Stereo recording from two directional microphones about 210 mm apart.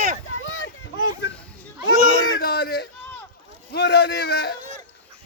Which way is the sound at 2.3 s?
50° left (ahead or behind).